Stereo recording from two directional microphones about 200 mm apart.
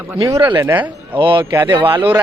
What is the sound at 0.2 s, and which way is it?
Speech, 15° right (ahead or behind).